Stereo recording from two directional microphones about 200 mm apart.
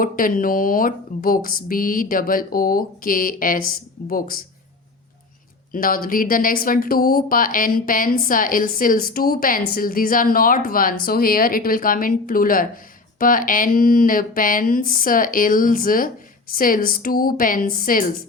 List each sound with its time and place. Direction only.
0.0 s speech: 45° left (ahead or behind)
5.7 s speech: 45° left (ahead or behind)